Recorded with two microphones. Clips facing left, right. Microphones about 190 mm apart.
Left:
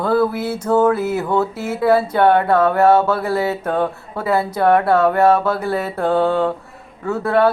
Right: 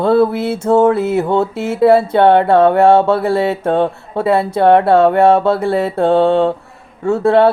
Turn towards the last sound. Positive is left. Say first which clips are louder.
# right 5 dB
turn(degrees=-25)  # may be behind; listen again after turning